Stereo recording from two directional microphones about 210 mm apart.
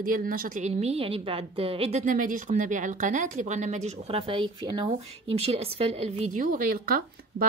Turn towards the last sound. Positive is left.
turn(degrees=-45)  # may be behind; listen again after turning